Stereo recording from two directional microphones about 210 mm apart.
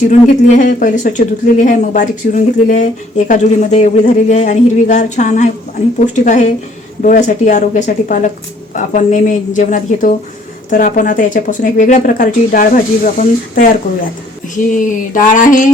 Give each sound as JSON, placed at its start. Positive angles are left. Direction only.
{"t": 0.1, "sound": "speech", "side_deg": 35}
{"t": 14.7, "sound": "speech", "side_deg": 40}